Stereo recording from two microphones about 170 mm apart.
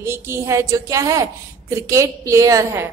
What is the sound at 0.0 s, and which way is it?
A woman's voice, 15° right (ahead or behind).